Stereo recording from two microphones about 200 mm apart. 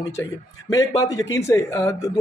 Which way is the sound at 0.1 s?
15° left (ahead or behind).